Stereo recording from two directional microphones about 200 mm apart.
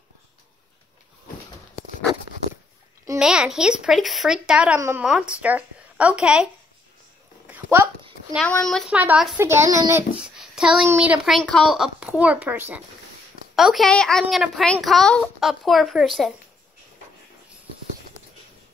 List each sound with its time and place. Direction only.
3.2 s a woman's voice: 5° right (ahead or behind)
7.4 s a sound: 10° right (ahead or behind)
8.4 s a woman's voice: 5° left (ahead or behind); by 10.0 s 15° right (ahead or behind)
10.2 s a woman's voice: 5° right (ahead or behind)